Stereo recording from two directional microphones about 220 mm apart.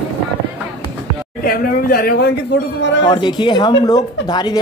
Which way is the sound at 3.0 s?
20° left (ahead or behind).